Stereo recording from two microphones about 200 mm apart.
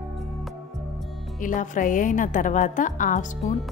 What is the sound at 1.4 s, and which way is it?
A woman's voice, 40° left (ahead or behind).